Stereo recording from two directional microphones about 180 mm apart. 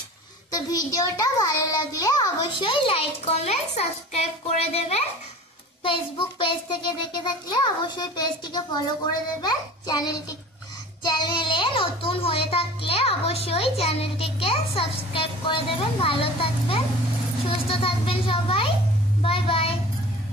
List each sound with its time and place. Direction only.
0.5 s a child's voice: 20° left (ahead or behind)